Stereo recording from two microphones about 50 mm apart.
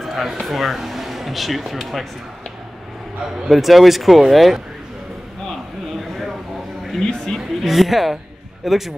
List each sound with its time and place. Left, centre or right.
0.0 s speech: centre
3.4 s speech: centre
5.9 s a sound: centre
7.0 s speech: centre
7.3 s speech: centre